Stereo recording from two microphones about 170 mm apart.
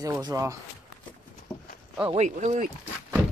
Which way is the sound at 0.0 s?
20° right (ahead or behind).